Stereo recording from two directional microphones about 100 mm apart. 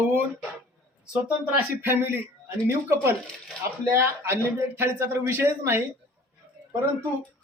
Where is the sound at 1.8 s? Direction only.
20° right (ahead or behind).